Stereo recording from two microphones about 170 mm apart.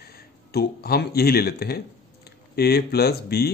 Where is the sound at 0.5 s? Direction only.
65° left (ahead or behind).